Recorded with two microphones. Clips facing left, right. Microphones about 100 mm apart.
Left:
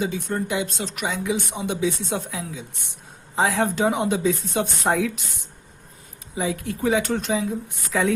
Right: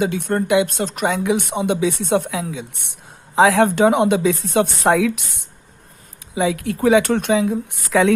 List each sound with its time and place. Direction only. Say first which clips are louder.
0.0 s speech: right 6 dB; 65° right (ahead or behind)
3.3 s speech: right 8 dB; 85° right